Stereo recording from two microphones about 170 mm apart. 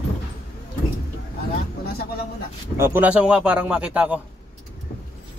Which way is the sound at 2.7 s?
15° right (ahead or behind).